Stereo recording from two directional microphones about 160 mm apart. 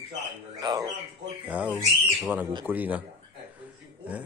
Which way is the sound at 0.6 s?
25° right (ahead or behind).